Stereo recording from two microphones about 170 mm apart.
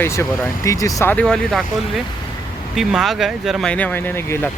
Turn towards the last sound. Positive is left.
turn(degrees=10)  # may be behind; listen again after turning